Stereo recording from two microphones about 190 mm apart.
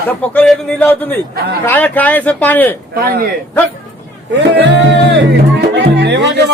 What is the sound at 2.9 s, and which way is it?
Speech, 50° right (ahead or behind).